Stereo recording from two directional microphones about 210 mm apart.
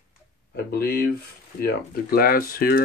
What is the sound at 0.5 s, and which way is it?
Speech, 45° left (ahead or behind).